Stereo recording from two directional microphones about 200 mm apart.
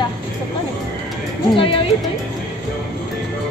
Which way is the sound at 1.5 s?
25° left (ahead or behind).